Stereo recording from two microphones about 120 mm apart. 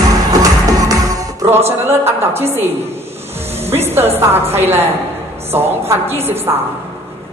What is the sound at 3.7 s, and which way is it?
A woman's voice, 20° right (ahead or behind).